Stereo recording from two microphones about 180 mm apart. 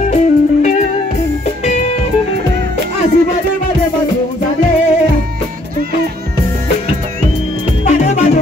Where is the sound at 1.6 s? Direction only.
40° left (ahead or behind).